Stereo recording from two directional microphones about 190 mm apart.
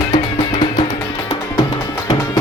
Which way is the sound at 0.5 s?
35° left (ahead or behind).